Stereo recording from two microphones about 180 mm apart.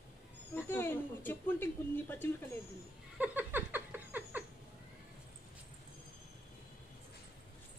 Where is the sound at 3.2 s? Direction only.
10° right (ahead or behind).